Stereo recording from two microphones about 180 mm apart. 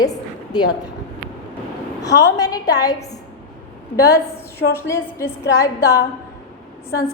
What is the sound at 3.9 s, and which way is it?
A woman's voice, 15° left (ahead or behind).